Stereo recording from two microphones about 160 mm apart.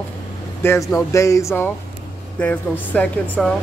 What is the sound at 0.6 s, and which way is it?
Speech, 15° left (ahead or behind).